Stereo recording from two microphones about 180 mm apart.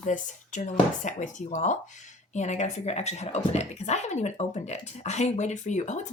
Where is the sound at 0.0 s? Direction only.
45° left (ahead or behind).